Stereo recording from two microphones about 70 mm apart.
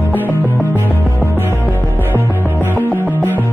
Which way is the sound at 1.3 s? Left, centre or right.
Right.